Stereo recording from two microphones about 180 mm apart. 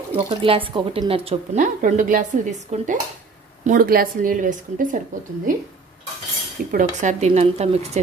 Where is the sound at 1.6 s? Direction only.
45° right (ahead or behind).